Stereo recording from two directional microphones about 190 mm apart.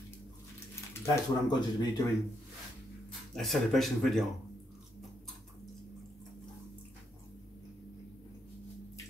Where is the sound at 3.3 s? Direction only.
Centre (ahead or behind).